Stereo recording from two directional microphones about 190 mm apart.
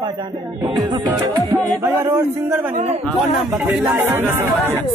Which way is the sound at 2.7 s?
30° right (ahead or behind).